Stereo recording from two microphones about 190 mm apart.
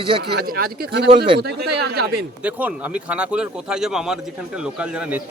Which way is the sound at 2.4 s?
10° right (ahead or behind).